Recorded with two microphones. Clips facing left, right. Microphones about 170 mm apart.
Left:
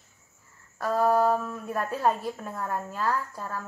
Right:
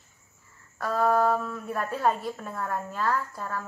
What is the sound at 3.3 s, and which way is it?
Speech, 5° left (ahead or behind).